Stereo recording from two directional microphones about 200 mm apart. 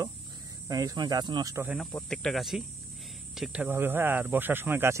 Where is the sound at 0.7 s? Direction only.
15° right (ahead or behind).